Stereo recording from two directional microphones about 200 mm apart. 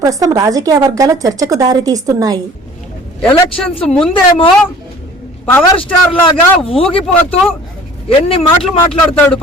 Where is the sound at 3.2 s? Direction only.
5° left (ahead or behind).